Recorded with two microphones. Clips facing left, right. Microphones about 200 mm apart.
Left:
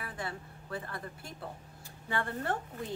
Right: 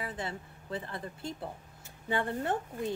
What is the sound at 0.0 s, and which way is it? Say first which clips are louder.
A woman's voice: right 2 dB; 25° right (ahead or behind).